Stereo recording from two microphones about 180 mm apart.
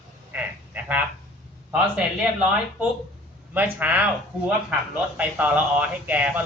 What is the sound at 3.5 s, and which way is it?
Speech, 10° right (ahead or behind).